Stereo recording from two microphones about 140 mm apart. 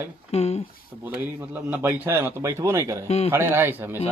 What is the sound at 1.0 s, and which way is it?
A man's voice, 15° right (ahead or behind).